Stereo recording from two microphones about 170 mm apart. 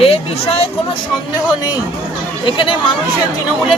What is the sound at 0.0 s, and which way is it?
Speech, 35° left (ahead or behind).